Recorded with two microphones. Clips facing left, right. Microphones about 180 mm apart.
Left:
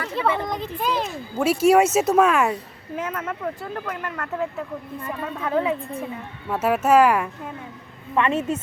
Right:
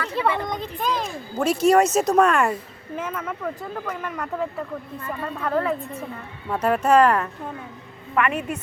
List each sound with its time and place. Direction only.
0.2 s a child's voice: 5° left (ahead or behind)
8.1 s speech: 25° left (ahead or behind)